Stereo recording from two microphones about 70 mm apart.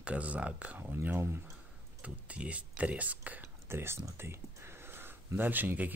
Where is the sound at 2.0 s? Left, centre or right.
Centre.